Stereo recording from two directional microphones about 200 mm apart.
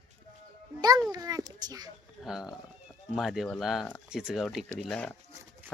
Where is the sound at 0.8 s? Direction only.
20° right (ahead or behind).